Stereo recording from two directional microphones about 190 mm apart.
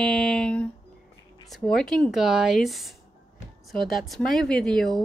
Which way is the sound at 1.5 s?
Centre (ahead or behind).